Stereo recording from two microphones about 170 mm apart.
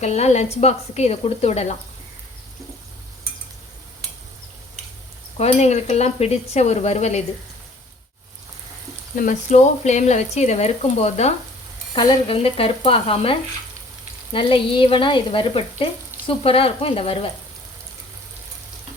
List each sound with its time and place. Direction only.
0.0 s stir: 40° left (ahead or behind)
5.4 s stir: 40° left (ahead or behind)
9.1 s speech: 50° left (ahead or behind)
11.9 s stir: 30° left (ahead or behind)